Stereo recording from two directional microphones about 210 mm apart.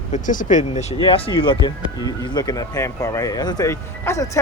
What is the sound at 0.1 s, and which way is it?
Speech, 35° left (ahead or behind).